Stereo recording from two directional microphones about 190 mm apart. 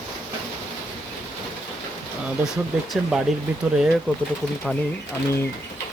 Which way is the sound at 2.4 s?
Centre (ahead or behind).